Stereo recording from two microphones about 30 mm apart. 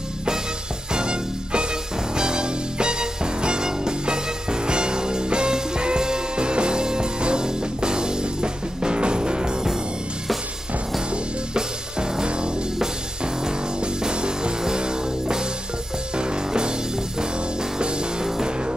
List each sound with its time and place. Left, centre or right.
0.9 s music: right
11.5 s music: right
13.7 s music: right